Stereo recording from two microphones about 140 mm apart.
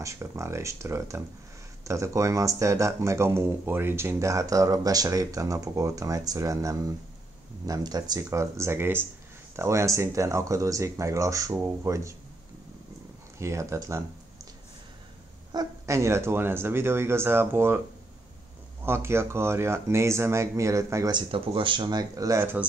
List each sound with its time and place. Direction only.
0.0 s speech: 20° right (ahead or behind)
13.4 s speech: 20° right (ahead or behind)
15.5 s speech: 20° right (ahead or behind)
18.9 s speech: 20° right (ahead or behind)